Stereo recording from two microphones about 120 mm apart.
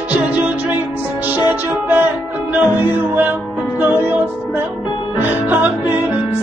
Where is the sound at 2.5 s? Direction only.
15° right (ahead or behind).